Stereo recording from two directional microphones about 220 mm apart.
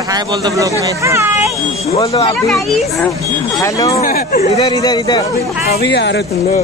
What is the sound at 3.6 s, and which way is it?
Speech, 15° left (ahead or behind).